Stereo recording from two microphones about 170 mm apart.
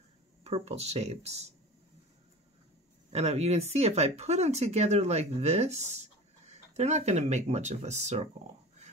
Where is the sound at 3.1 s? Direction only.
40° right (ahead or behind).